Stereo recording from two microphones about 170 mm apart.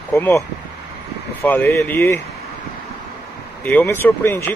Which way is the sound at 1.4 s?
10° left (ahead or behind).